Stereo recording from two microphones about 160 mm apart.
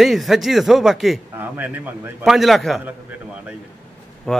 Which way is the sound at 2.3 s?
Centre (ahead or behind).